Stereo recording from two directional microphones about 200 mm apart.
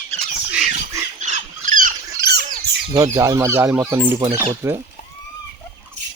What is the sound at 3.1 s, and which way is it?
Speech, 15° right (ahead or behind).